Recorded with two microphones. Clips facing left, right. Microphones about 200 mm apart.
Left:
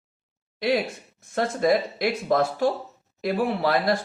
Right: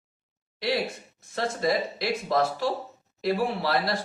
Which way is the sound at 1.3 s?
50° left (ahead or behind).